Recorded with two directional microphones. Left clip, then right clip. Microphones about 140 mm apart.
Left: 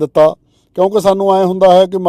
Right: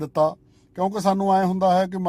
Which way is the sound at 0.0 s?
40° left (ahead or behind).